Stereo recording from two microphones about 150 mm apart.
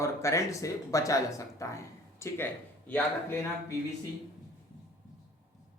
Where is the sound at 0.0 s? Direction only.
20° left (ahead or behind).